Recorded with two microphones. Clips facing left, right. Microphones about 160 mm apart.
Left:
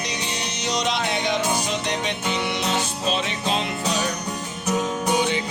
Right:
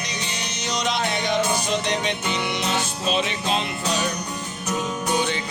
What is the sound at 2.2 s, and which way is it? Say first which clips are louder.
Music: left 1 dB; centre (ahead or behind).